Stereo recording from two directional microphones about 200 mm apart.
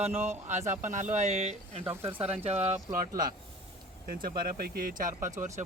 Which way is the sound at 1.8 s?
10° right (ahead or behind).